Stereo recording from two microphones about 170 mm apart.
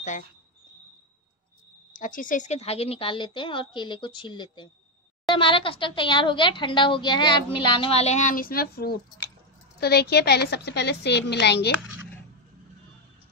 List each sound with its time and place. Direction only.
2.0 s a woman's voice: 50° left (ahead or behind); by 11.7 s 80° left